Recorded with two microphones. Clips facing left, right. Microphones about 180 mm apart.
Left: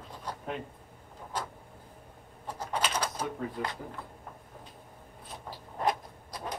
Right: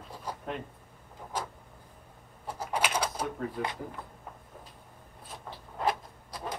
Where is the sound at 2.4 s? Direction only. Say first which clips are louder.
Right 1 dB; 10° right (ahead or behind).